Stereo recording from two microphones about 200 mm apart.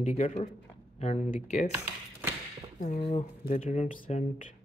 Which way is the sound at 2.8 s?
35° left (ahead or behind).